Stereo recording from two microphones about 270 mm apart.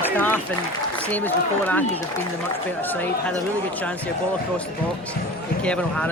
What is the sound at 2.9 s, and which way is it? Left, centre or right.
Speech, centre.